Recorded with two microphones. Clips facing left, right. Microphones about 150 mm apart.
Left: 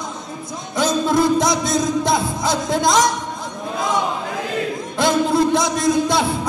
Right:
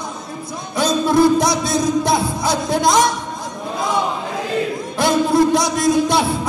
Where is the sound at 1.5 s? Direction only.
20° left (ahead or behind).